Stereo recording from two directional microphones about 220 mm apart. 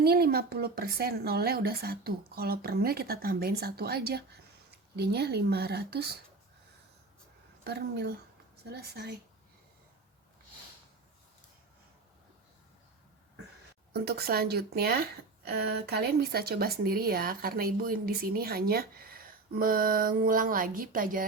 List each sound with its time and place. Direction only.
0.0 s speech: 45° right (ahead or behind)
7.6 s speech: 50° right (ahead or behind)
13.9 s speech: 45° right (ahead or behind)